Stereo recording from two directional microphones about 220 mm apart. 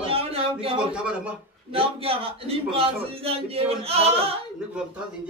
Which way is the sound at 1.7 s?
25° right (ahead or behind).